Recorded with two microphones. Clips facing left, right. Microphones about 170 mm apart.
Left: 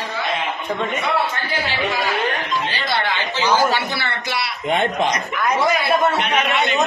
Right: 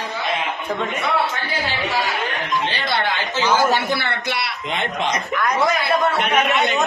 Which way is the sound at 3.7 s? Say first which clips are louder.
Right 2 dB; 50° right (ahead or behind).